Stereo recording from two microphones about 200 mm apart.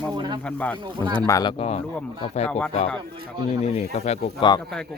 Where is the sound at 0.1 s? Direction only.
20° right (ahead or behind).